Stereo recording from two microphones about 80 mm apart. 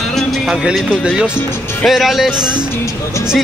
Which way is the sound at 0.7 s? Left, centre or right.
Centre.